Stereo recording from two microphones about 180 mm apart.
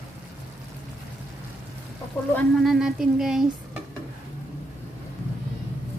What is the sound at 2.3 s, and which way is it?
Stir, centre (ahead or behind).